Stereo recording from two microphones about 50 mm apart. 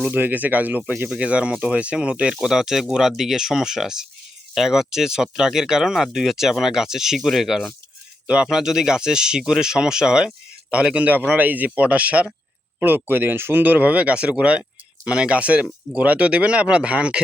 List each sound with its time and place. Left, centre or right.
0.1 s speech: right
1.2 s a man's voice: right
12.8 s speech: right
13.6 s a man's voice: right